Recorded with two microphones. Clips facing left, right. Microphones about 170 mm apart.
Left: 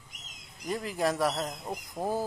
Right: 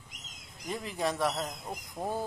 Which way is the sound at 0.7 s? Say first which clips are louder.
Left 3 dB; centre (ahead or behind).